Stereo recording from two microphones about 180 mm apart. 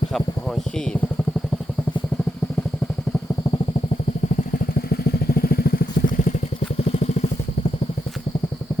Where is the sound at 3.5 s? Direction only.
40° left (ahead or behind).